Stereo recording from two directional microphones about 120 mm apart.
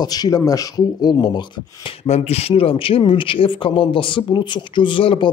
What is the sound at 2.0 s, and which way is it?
A man's voice, 60° left (ahead or behind).